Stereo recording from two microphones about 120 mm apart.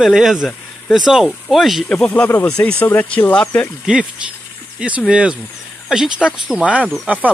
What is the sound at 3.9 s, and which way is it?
Speech, 5° right (ahead or behind).